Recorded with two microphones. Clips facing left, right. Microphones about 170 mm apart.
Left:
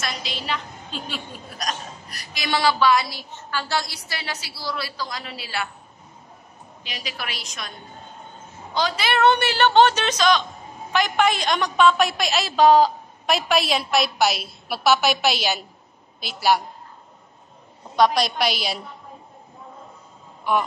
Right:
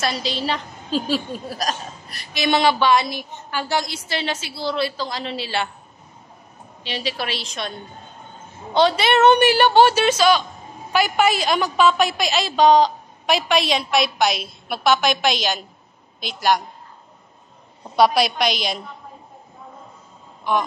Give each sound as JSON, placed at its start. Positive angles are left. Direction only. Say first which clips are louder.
{"t": 0.0, "sound": "a woman's voice", "louder": "right 7 dB", "side_deg": -30}
{"t": 6.8, "sound": "a woman's voice", "louder": "right 8 dB", "side_deg": -30}
{"t": 8.7, "sound": "a woman's voice", "louder": "right 6 dB", "side_deg": -25}
{"t": 17.9, "sound": "a woman's voice", "louder": "right 2 dB", "side_deg": -5}